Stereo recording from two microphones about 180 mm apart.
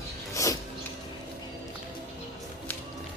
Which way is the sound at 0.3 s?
15° left (ahead or behind).